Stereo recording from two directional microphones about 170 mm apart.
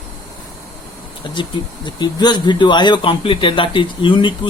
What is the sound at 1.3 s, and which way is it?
Speech, 25° left (ahead or behind).